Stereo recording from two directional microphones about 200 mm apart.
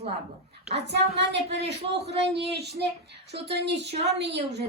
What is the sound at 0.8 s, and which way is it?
Speech, 60° right (ahead or behind).